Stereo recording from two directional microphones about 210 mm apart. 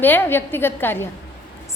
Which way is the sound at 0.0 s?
10° left (ahead or behind).